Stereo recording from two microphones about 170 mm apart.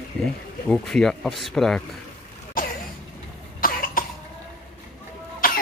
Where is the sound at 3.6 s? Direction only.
55° left (ahead or behind).